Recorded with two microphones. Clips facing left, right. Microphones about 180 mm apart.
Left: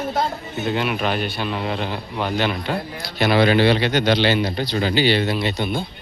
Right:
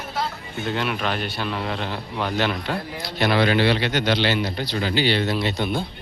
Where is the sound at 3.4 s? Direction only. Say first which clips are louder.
Left 5 dB; 20° left (ahead or behind); by 5.9 s centre (ahead or behind).